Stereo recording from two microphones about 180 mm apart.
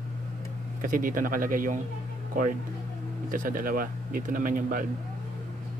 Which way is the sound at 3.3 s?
50° right (ahead or behind).